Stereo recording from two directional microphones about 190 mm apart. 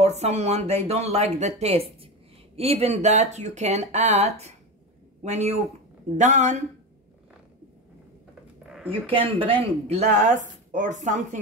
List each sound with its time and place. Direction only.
0.0 s speech: 35° right (ahead or behind)
8.6 s a sound: centre (ahead or behind)
9.1 s speech: 30° right (ahead or behind)